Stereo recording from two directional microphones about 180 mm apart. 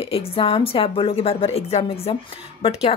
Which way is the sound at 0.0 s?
30° left (ahead or behind).